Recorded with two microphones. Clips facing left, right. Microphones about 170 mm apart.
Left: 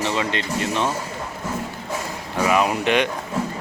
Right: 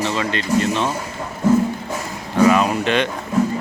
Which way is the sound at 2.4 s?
15° left (ahead or behind).